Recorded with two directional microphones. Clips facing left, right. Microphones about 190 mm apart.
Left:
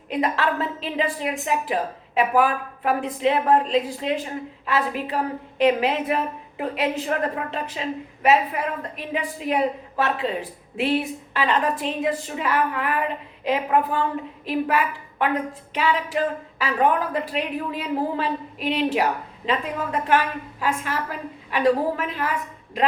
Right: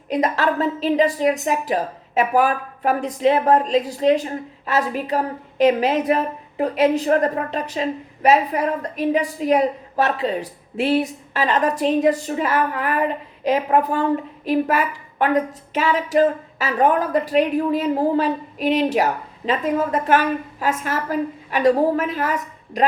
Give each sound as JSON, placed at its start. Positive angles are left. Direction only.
{"t": 0.1, "sound": "a woman's voice", "side_deg": -40}